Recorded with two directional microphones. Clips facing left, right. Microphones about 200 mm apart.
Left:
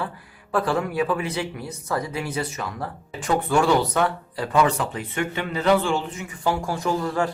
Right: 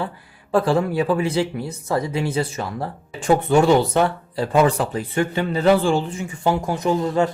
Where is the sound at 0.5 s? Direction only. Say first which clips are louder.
Right 5 dB; 30° right (ahead or behind).